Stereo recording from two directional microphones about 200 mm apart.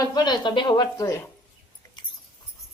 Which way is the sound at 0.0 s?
20° left (ahead or behind).